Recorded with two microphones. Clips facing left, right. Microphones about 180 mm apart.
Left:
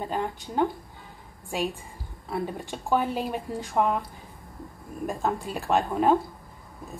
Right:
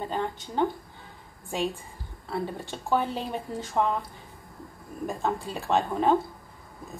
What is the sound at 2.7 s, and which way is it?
Speech, 10° left (ahead or behind).